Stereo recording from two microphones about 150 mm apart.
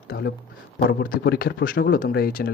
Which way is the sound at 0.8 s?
75° left (ahead or behind).